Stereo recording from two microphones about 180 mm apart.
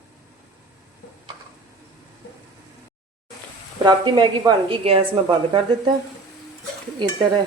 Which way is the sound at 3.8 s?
25° right (ahead or behind).